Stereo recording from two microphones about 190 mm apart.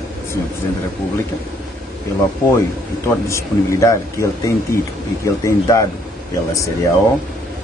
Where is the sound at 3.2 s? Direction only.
15° left (ahead or behind).